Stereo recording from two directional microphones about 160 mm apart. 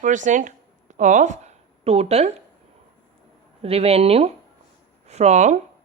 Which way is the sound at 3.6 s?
40° right (ahead or behind).